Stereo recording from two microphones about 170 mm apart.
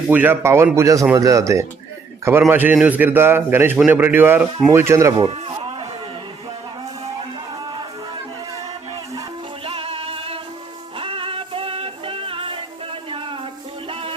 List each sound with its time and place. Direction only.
0.1 s a man's voice: 10° right (ahead or behind)
5.1 s a sound: 30° right (ahead or behind)
7.5 s music: 25° right (ahead or behind)
9.6 s music: 35° right (ahead or behind)